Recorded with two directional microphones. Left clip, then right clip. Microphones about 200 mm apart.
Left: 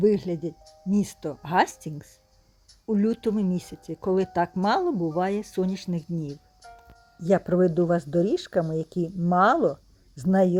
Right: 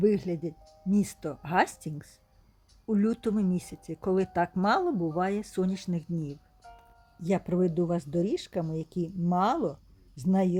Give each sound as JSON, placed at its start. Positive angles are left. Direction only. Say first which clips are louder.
{"t": 0.0, "sound": "speech", "louder": "left 4 dB", "side_deg": 5}
{"t": 6.2, "sound": "music", "louder": "left 4 dB", "side_deg": 20}
{"t": 6.7, "sound": "speech", "louder": "left 4 dB", "side_deg": 5}